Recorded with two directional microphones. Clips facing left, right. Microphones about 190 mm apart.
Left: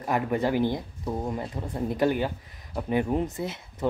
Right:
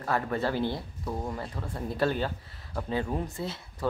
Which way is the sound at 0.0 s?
15° left (ahead or behind).